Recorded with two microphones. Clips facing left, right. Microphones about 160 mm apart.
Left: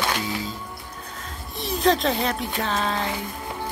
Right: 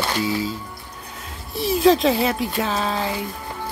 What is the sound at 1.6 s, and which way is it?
Speech, 5° right (ahead or behind).